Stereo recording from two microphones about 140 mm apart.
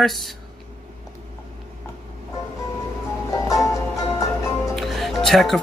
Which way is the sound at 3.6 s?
25° left (ahead or behind).